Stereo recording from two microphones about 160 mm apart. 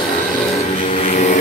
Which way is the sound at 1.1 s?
45° left (ahead or behind).